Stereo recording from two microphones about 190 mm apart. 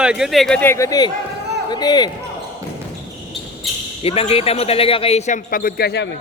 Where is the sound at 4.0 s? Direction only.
30° left (ahead or behind); by 6.0 s 55° left (ahead or behind).